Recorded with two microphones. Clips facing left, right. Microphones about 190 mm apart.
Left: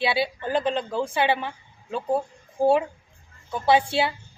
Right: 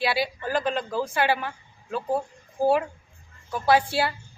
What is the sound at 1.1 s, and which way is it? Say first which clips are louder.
Speech: left 1 dB; 25° left (ahead or behind).